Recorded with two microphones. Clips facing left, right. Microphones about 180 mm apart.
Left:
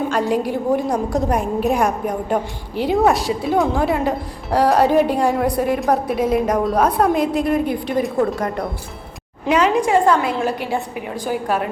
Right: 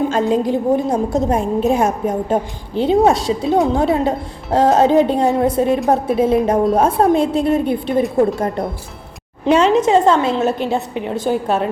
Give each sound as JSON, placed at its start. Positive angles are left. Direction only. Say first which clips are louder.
{"t": 0.1, "sound": "a woman's voice", "louder": "right 3 dB", "side_deg": -25}
{"t": 9.5, "sound": "a woman's voice", "louder": "right 3 dB", "side_deg": -25}